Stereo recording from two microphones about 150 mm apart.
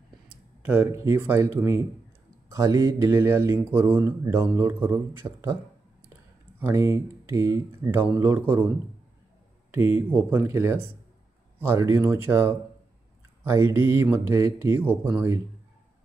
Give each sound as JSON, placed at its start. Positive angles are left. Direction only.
{"t": 0.7, "sound": "speech", "side_deg": -15}
{"t": 6.6, "sound": "speech", "side_deg": -20}
{"t": 10.1, "sound": "speech", "side_deg": -15}